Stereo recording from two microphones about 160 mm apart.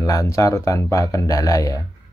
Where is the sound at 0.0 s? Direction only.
20° left (ahead or behind).